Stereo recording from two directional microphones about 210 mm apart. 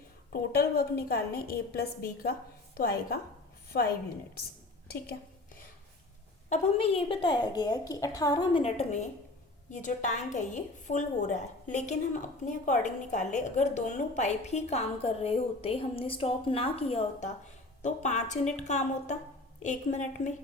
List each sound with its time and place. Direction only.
0.5 s a woman's voice: 45° left (ahead or behind)
3.7 s a woman's voice: 45° left (ahead or behind)
6.5 s a woman's voice: 30° left (ahead or behind)